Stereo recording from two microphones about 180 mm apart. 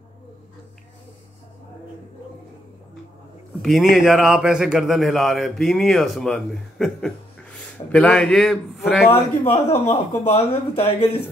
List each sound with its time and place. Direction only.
3.6 s a man's voice: centre (ahead or behind)
9.1 s speech: 35° left (ahead or behind)